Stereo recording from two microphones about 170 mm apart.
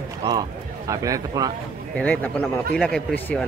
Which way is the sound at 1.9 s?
5° left (ahead or behind).